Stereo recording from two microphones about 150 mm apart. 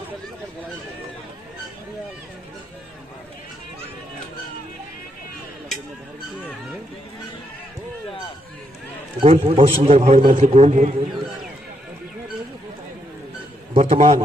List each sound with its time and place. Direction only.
9.2 s a man's voice: 40° right (ahead or behind)
9.6 s a man's voice: 50° right (ahead or behind)
13.7 s a man's voice: 45° right (ahead or behind)